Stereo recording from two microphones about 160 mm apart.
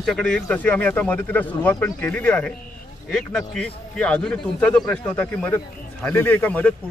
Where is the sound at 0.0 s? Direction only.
5° left (ahead or behind).